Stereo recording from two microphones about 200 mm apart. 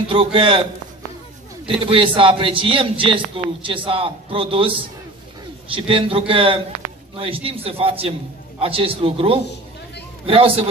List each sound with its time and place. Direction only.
0.1 s a man's voice: 25° right (ahead or behind)
1.7 s a man's voice: 25° right (ahead or behind)
5.8 s a man's voice: 25° right (ahead or behind)